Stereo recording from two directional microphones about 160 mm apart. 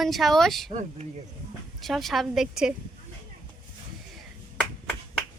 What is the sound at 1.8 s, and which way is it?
Speech, centre (ahead or behind).